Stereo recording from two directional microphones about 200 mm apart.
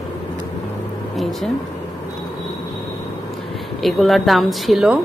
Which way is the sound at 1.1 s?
Centre (ahead or behind).